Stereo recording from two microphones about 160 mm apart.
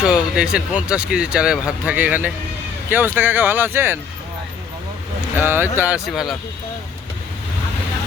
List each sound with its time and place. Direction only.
0.0 s speech: 5° right (ahead or behind)
5.4 s speech: 15° right (ahead or behind)
6.1 s speech: centre (ahead or behind)